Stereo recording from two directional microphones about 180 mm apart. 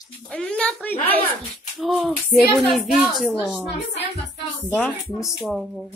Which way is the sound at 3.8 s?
75° left (ahead or behind).